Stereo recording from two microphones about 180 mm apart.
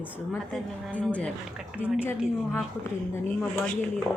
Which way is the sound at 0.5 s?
5° left (ahead or behind).